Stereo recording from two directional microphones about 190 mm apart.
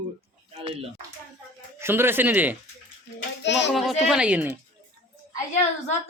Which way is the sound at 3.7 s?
Centre (ahead or behind).